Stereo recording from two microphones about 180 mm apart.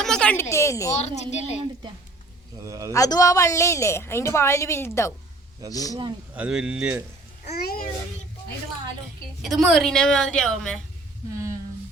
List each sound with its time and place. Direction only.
0.0 s a sound: 5° left (ahead or behind)
0.5 s a woman's voice: 15° left (ahead or behind)
1.0 s a woman's voice: 40° left (ahead or behind)
2.6 s a man's voice: 20° right (ahead or behind)
2.9 s a woman's voice: 20° left (ahead or behind)
6.3 s speech: 5° right (ahead or behind)
7.5 s a child's voice: 60° left (ahead or behind)
9.4 s speech: centre (ahead or behind)